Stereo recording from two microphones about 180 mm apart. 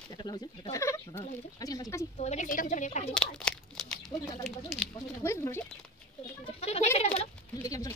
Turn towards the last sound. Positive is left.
turn(degrees=20)  # may be behind; listen again after turning